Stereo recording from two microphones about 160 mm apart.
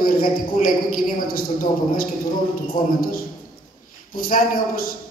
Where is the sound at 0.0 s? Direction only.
60° left (ahead or behind).